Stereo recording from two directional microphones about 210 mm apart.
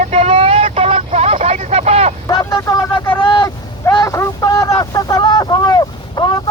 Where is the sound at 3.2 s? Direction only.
20° left (ahead or behind).